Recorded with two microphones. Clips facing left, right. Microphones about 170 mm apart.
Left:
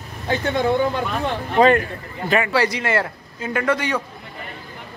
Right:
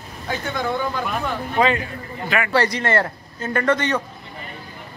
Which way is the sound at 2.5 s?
5° left (ahead or behind).